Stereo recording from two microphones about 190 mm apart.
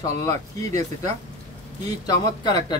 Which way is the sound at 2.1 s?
20° left (ahead or behind).